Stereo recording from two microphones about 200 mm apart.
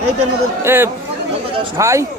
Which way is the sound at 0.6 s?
10° right (ahead or behind).